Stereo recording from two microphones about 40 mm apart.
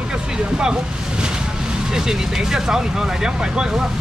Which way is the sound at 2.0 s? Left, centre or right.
Centre.